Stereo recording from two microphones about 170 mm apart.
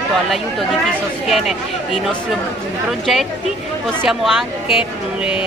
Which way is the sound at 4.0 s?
Centre (ahead or behind).